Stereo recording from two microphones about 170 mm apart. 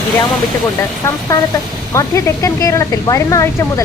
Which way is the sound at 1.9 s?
20° left (ahead or behind).